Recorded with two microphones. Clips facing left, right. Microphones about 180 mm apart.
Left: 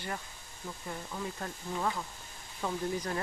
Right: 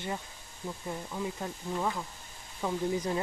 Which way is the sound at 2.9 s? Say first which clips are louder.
Right 4 dB; 20° right (ahead or behind).